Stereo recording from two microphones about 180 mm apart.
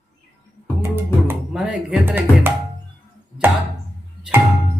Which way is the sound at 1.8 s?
10° right (ahead or behind).